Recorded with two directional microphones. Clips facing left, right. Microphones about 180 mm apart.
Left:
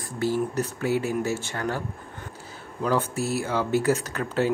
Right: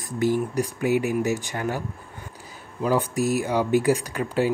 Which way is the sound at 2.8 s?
15° right (ahead or behind).